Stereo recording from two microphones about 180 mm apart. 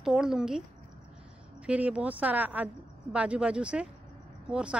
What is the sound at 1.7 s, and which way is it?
Speech, 10° right (ahead or behind).